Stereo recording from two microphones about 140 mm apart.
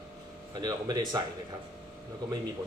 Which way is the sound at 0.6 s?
30° right (ahead or behind).